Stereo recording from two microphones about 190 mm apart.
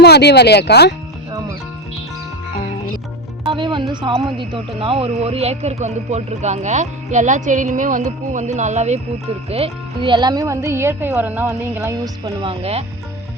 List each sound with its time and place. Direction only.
0.0 s speech: 60° left (ahead or behind)
3.6 s speech: 25° right (ahead or behind)